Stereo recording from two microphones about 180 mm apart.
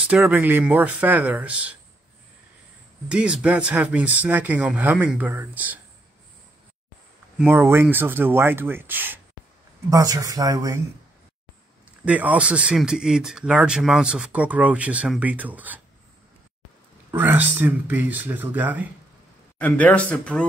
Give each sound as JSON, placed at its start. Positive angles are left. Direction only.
{"t": 0.0, "sound": "speech", "side_deg": -10}
{"t": 3.1, "sound": "speech", "side_deg": -5}
{"t": 7.3, "sound": "speech", "side_deg": -10}
{"t": 12.0, "sound": "speech", "side_deg": -10}
{"t": 17.1, "sound": "speech", "side_deg": -10}
{"t": 19.6, "sound": "speech", "side_deg": 10}